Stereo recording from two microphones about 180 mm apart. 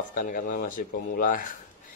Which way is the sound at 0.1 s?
45° left (ahead or behind).